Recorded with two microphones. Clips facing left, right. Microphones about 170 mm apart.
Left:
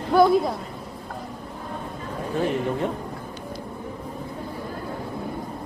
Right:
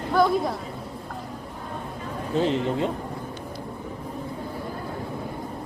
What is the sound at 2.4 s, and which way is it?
Speech, 20° right (ahead or behind).